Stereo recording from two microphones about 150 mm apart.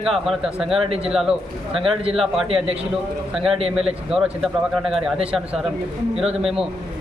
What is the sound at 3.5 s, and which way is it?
Speech, 40° right (ahead or behind).